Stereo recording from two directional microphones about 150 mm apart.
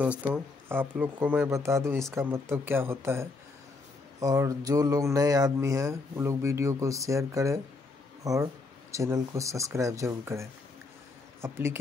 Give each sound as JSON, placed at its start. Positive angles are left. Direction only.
{"t": 0.0, "sound": "speech", "side_deg": -10}